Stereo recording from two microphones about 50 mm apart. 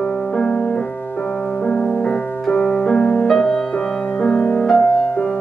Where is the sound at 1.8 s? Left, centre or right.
Centre.